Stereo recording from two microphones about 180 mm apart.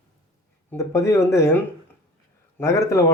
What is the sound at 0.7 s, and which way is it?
Speech, 15° left (ahead or behind).